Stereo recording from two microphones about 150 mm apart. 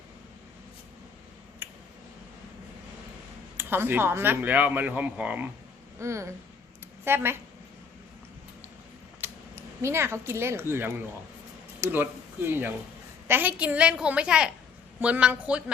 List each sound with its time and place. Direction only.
1.6 s a sound: 15° right (ahead or behind)
3.6 s speech: 15° right (ahead or behind)
9.2 s speech: 15° right (ahead or behind)